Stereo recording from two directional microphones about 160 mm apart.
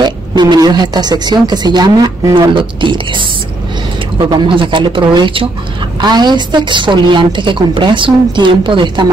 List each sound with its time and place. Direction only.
0.0 s a woman's voice: 25° right (ahead or behind)
4.3 s a woman's voice: 30° right (ahead or behind)